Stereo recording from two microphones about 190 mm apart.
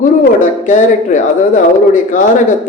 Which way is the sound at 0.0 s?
40° left (ahead or behind).